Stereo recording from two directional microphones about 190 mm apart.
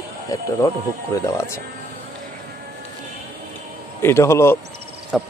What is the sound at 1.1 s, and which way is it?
Speech, 15° left (ahead or behind).